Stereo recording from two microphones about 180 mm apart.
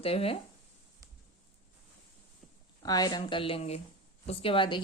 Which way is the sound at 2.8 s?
20° left (ahead or behind).